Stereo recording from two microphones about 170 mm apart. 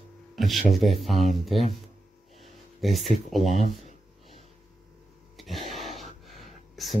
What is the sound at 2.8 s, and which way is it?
Speech, centre (ahead or behind).